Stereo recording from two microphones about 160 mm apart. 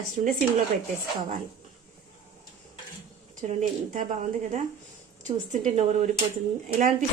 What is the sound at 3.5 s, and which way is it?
Speech, 50° right (ahead or behind).